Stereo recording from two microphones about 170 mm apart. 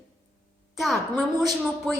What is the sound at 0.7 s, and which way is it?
Speech, centre (ahead or behind).